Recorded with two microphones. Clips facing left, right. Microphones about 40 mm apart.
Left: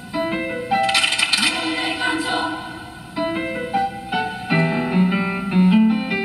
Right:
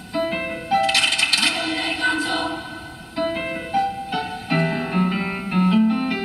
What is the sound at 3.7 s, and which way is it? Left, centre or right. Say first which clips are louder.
Music: right 2 dB; centre.